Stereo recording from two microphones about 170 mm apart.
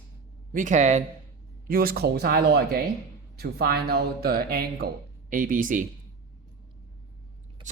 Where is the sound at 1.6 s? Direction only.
60° right (ahead or behind).